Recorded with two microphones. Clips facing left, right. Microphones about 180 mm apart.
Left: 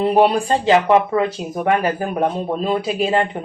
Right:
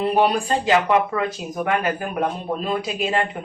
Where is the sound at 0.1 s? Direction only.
30° left (ahead or behind).